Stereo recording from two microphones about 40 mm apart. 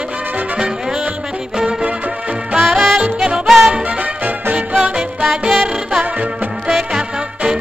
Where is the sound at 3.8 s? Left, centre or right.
Right.